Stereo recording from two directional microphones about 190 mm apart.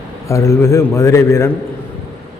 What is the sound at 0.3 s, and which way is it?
A man's voice, 15° left (ahead or behind).